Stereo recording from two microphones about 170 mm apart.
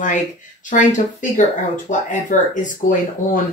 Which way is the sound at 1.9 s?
50° left (ahead or behind).